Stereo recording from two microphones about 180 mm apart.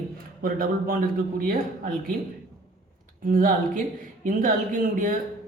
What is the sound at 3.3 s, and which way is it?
A man's voice, 45° right (ahead or behind).